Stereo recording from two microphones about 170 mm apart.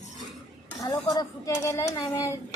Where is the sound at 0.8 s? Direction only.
20° left (ahead or behind).